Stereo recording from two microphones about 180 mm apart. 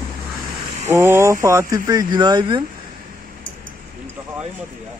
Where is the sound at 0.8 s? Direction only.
15° right (ahead or behind).